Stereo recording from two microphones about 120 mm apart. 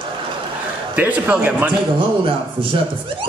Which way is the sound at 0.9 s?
15° right (ahead or behind).